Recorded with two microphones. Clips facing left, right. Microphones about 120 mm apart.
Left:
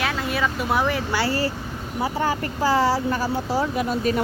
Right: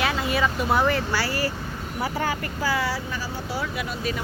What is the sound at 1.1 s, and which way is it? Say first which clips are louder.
Speech: left 3 dB; 25° left (ahead or behind).